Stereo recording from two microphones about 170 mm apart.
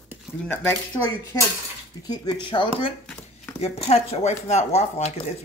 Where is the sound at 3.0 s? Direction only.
5° left (ahead or behind).